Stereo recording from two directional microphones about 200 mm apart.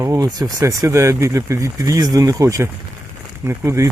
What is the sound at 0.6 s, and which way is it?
Speech, 15° right (ahead or behind).